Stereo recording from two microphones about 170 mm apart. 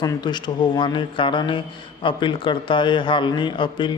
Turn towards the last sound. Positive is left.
turn(degrees=30)  # may be behind; listen again after turning